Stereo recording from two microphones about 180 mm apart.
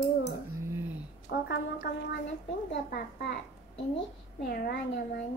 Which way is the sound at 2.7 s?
65° left (ahead or behind).